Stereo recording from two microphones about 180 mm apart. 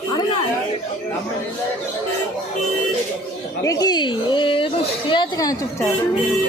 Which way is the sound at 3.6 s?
20° left (ahead or behind).